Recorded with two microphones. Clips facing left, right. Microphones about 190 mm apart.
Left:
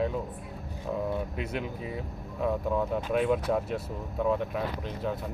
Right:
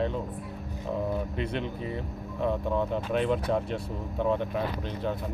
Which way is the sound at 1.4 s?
5° left (ahead or behind).